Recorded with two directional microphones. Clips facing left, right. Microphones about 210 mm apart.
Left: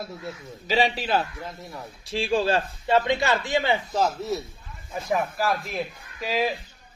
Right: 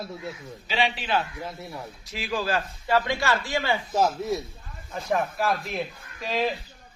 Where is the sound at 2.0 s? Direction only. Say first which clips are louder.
Left 6 dB; 30° left (ahead or behind).